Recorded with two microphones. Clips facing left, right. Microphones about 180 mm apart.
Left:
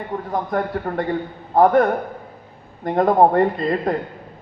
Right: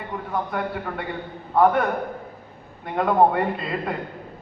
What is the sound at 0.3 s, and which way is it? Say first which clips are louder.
A man's voice: left 3 dB; 40° left (ahead or behind).